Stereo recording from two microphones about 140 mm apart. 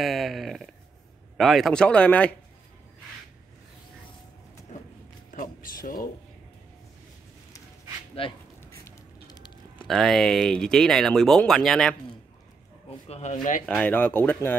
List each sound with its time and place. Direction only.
0.0 s speech: centre (ahead or behind)
5.3 s speech: 80° left
8.2 s speech: 40° left (ahead or behind)
8.8 s typing: 30° left (ahead or behind)
9.8 s speech: centre (ahead or behind)
13.1 s speech: 55° left (ahead or behind)
13.7 s speech: 10° left (ahead or behind)